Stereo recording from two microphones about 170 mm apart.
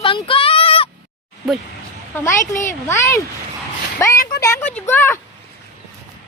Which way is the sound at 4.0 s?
20° left (ahead or behind).